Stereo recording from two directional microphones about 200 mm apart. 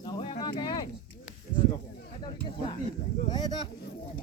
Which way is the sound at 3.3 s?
20° left (ahead or behind).